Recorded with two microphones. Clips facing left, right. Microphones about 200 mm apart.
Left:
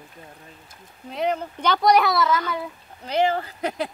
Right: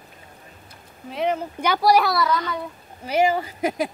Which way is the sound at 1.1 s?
Centre (ahead or behind).